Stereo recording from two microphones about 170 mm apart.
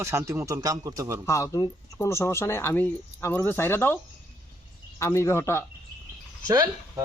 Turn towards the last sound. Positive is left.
turn(degrees=-25)  # may be behind; listen again after turning